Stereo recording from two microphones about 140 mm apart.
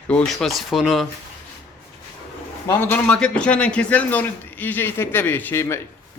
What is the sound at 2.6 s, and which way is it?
A man's voice, 15° left (ahead or behind).